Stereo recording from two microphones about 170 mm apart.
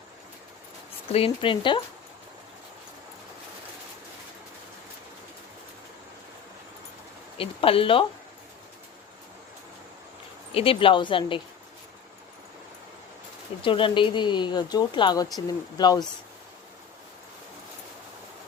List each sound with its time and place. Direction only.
1.1 s speech: 35° left (ahead or behind)
7.3 s speech: 30° left (ahead or behind)
10.5 s speech: 30° left (ahead or behind)
13.6 s speech: 30° left (ahead or behind)